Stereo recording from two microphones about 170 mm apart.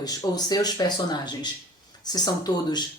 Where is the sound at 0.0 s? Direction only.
20° left (ahead or behind).